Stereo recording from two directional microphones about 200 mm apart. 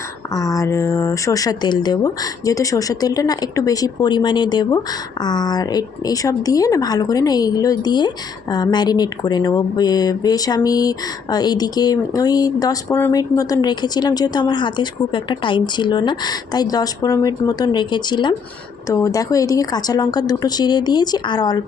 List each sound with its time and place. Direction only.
0.3 s speech: 15° left (ahead or behind)